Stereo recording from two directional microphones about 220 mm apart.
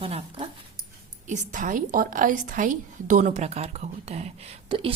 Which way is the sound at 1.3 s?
35° right (ahead or behind).